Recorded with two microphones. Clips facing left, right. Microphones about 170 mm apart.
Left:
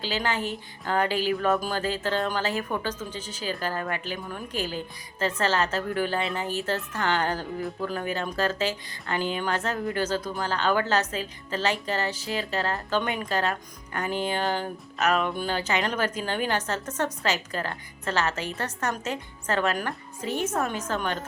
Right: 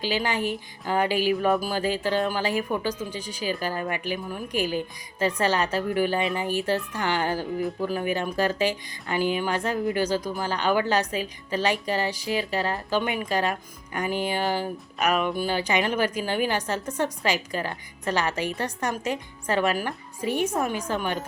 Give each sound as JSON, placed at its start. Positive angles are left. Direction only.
{"t": 0.0, "sound": "a woman's voice", "side_deg": -10}